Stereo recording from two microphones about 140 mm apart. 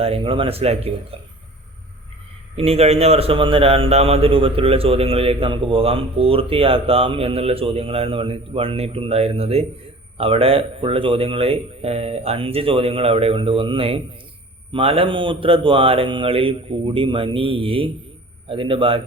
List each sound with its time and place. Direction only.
0.0 s a man's voice: 40° right (ahead or behind)
2.6 s a man's voice: 45° right (ahead or behind)